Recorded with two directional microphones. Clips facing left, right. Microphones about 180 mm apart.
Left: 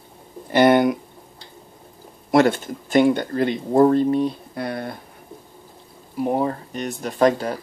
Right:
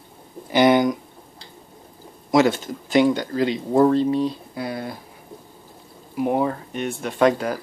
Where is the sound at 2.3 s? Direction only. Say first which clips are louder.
Left 1 dB; 55° left (ahead or behind).